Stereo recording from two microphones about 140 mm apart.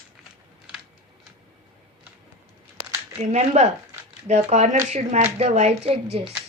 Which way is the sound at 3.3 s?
55° right (ahead or behind).